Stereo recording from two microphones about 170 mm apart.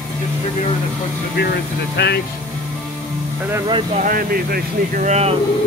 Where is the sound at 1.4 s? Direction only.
75° left (ahead or behind).